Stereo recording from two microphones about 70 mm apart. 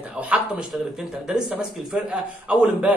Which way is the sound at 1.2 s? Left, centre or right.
Centre.